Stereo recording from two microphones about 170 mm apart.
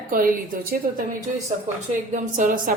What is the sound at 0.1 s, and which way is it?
Speech, 55° right (ahead or behind).